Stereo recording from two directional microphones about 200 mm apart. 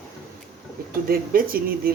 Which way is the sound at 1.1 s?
45° right (ahead or behind).